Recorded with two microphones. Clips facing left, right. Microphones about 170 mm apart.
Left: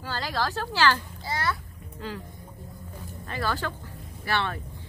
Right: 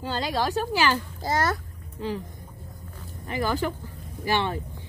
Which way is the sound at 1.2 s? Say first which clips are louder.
Right 5 dB; 45° right (ahead or behind).